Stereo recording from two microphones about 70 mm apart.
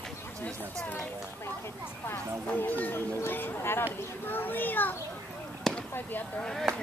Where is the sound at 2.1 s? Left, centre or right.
Left.